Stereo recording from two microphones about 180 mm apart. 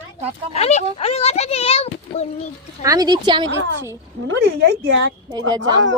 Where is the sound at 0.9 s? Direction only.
35° left (ahead or behind).